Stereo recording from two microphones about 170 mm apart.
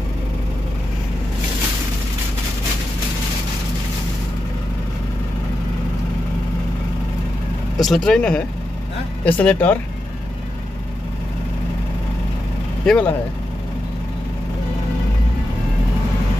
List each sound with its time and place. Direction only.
7.8 s speech: 5° left (ahead or behind)
12.8 s speech: 5° left (ahead or behind)